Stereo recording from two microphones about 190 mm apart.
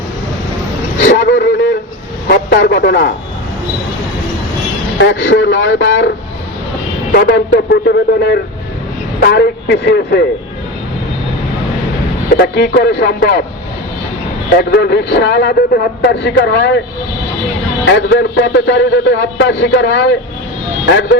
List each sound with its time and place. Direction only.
0.9 s a sound: 40° left (ahead or behind)
1.2 s a sound: 70° left (ahead or behind)
2.2 s a man's voice: 60° left (ahead or behind)
4.9 s a man's voice: 70° left (ahead or behind)
7.1 s a man's voice: 60° left (ahead or behind)
12.4 s a man's voice: 60° left (ahead or behind)
14.6 s a man's voice: 60° left (ahead or behind)
17.8 s a man's voice: 65° left (ahead or behind)